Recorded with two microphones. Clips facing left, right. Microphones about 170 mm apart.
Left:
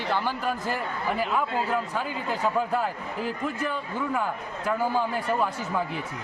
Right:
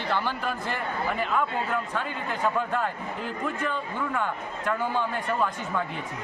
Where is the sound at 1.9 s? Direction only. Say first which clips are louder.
Left 1 dB; 5° left (ahead or behind).